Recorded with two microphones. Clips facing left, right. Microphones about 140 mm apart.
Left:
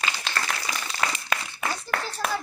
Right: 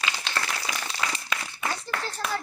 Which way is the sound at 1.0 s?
55° left (ahead or behind).